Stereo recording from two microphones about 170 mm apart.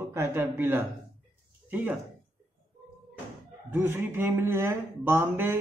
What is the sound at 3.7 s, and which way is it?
A man's voice, 10° right (ahead or behind).